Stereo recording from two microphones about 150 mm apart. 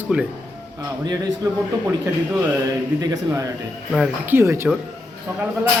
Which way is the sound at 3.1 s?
25° right (ahead or behind).